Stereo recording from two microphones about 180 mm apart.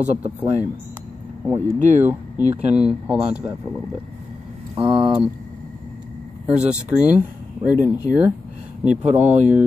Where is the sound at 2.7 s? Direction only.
5° right (ahead or behind).